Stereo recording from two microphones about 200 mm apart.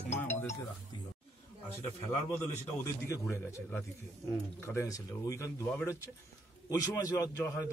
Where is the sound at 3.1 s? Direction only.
15° left (ahead or behind).